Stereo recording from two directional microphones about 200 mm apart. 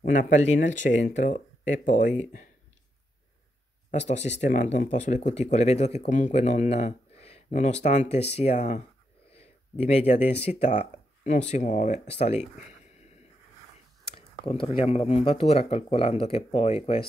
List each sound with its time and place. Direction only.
0.0 s speech: 40° left (ahead or behind)
3.9 s speech: 35° left (ahead or behind)
9.3 s a sound: 30° left (ahead or behind)
10.4 s speech: 35° left (ahead or behind)
14.1 s speech: 25° left (ahead or behind)